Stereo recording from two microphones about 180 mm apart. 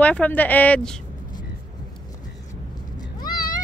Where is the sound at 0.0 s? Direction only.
5° left (ahead or behind).